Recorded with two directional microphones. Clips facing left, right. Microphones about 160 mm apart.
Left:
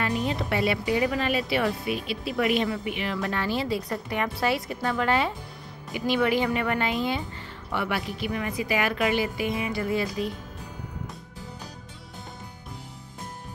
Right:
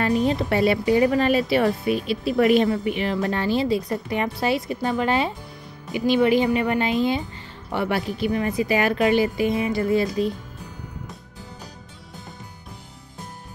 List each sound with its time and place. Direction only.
0.0 s speech: 35° right (ahead or behind)
3.3 s a woman's voice: 25° right (ahead or behind)
7.7 s speech: 35° right (ahead or behind)